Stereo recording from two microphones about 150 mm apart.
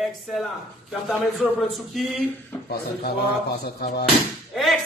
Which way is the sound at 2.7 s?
90° left.